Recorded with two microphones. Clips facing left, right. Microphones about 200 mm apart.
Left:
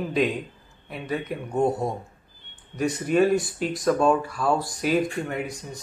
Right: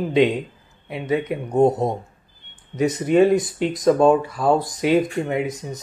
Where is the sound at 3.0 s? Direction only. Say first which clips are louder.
Right 5 dB; 20° right (ahead or behind).